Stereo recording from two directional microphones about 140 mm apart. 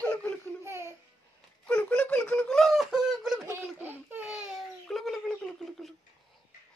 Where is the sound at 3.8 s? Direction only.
15° right (ahead or behind).